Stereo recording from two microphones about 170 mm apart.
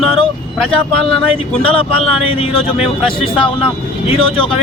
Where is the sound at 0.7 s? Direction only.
35° left (ahead or behind).